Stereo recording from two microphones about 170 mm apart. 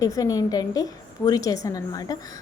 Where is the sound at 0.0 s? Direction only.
20° left (ahead or behind).